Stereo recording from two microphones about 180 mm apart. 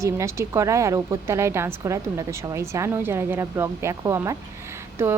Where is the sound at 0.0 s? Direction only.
15° right (ahead or behind).